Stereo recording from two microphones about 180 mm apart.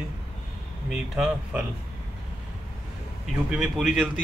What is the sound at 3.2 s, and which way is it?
Speech, centre (ahead or behind).